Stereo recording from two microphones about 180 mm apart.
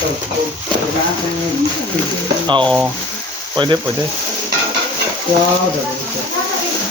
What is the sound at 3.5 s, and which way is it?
Speech, 25° right (ahead or behind).